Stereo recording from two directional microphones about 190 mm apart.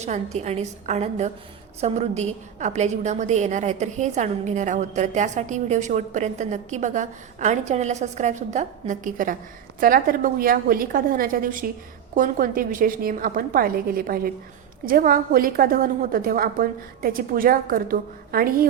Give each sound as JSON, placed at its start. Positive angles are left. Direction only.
{"t": 0.0, "sound": "a woman's voice", "side_deg": -35}